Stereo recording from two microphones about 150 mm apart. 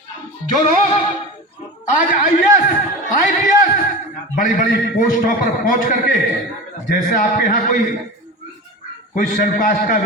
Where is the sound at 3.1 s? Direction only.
65° left (ahead or behind).